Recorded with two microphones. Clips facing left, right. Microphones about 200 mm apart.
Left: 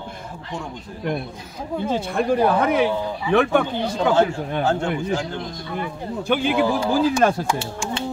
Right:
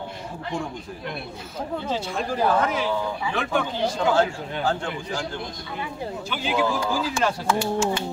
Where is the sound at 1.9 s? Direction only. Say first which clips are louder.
Left 9 dB; 60° left (ahead or behind).